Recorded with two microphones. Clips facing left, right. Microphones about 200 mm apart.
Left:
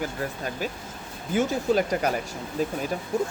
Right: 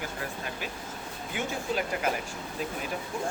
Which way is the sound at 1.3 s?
40° left (ahead or behind).